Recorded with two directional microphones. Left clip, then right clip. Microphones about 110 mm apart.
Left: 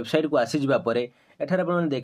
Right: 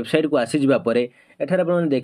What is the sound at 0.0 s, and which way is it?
Speech, 20° right (ahead or behind).